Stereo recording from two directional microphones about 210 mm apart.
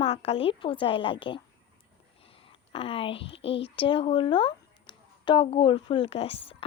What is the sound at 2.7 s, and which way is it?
A woman's voice, 25° left (ahead or behind).